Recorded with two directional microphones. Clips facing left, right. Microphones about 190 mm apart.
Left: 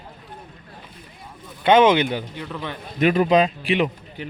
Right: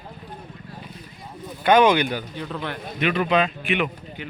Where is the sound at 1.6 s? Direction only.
20° left (ahead or behind).